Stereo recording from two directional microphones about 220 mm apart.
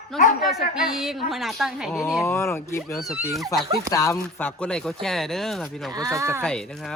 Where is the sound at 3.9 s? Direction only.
15° left (ahead or behind).